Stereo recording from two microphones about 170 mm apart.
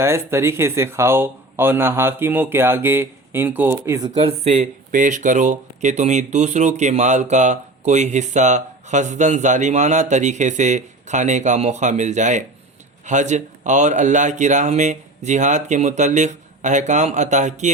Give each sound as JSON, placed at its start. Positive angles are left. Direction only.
{"t": 0.0, "sound": "speech", "side_deg": -15}
{"t": 4.2, "sound": "speech", "side_deg": -35}